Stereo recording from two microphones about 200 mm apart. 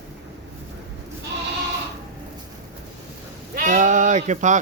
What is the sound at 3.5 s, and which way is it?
Sheep, 40° right (ahead or behind).